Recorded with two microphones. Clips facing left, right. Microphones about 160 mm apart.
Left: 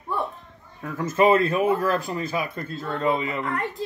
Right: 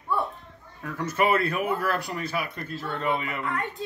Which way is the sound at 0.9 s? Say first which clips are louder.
Left 5 dB; 25° left (ahead or behind).